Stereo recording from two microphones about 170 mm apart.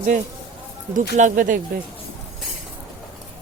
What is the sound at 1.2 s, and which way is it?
Speech, 50° right (ahead or behind).